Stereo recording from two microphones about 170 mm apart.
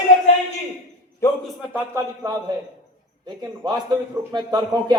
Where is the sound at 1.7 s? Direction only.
15° right (ahead or behind).